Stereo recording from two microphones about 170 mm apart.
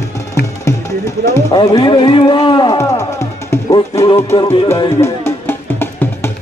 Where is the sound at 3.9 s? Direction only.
35° left (ahead or behind).